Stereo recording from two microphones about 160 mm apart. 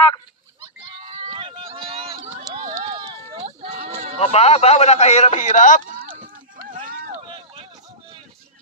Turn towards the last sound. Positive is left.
turn(degrees=-60)  # may be behind; listen again after turning